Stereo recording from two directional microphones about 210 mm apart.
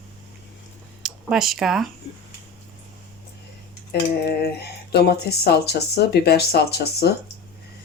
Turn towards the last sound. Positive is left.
turn(degrees=50)  # may be behind; listen again after turning